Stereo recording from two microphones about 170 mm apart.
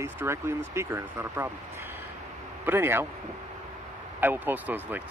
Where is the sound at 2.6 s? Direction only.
15° right (ahead or behind).